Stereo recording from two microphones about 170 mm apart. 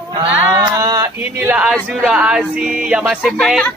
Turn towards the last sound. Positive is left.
turn(degrees=0)  # may be behind; listen again after turning